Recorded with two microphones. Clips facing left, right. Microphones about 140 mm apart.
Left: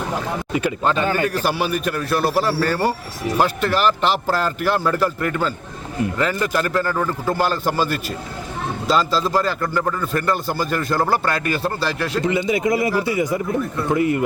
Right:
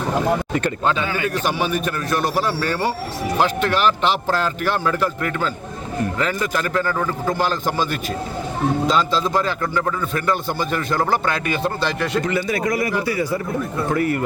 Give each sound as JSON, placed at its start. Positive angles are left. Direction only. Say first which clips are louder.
{"t": 0.5, "sound": "a man's voice", "louder": "left 1 dB", "side_deg": 5}
{"t": 1.0, "sound": "a man's voice", "louder": "left 3 dB", "side_deg": 45}
{"t": 1.5, "sound": "a man's voice", "louder": "even", "side_deg": 5}
{"t": 8.9, "sound": "a man's voice", "louder": "left 1 dB", "side_deg": 5}
{"t": 12.2, "sound": "a man's voice", "louder": "left 2 dB", "side_deg": 20}